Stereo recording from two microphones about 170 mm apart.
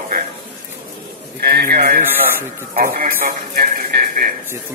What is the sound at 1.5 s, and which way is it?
A man's voice, 60° right (ahead or behind).